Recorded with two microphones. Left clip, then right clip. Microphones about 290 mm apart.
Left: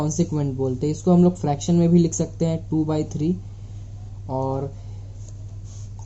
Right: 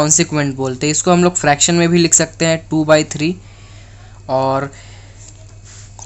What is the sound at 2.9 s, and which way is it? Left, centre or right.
Speech, right.